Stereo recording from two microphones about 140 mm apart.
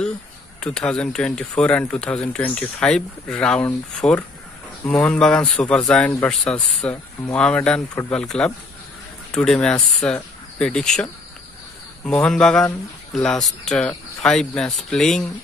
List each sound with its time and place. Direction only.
0.6 s speech: 5° left (ahead or behind)